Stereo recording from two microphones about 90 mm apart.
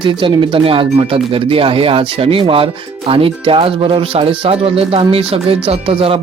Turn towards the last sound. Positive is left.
turn(degrees=-85)